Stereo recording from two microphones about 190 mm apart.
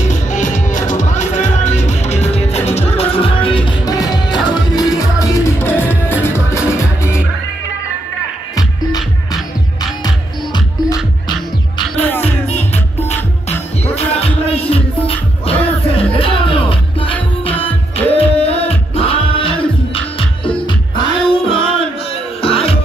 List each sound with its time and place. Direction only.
0.0 s music: 40° left (ahead or behind); by 7.2 s 15° left (ahead or behind)
8.5 s music: 20° left (ahead or behind)
13.9 s music: 30° left (ahead or behind)